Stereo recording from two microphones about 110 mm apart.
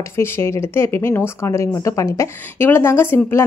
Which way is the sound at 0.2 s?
25° left (ahead or behind).